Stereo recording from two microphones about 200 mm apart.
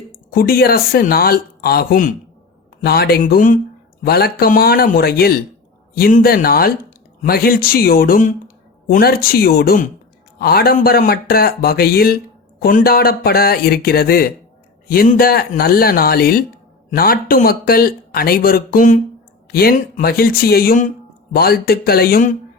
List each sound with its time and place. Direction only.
0.3 s speech: 50° left (ahead or behind)